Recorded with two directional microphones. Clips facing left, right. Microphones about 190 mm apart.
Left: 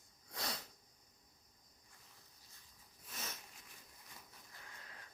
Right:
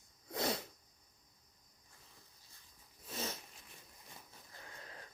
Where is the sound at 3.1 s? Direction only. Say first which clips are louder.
Right 8 dB; 30° right (ahead or behind).